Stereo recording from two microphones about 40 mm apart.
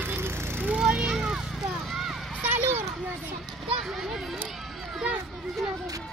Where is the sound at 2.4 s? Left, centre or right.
Right.